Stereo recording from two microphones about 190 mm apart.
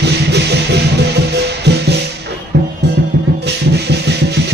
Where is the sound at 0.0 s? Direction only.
60° right (ahead or behind).